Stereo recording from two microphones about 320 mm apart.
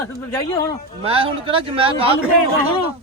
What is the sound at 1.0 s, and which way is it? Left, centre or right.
A man's voice, centre.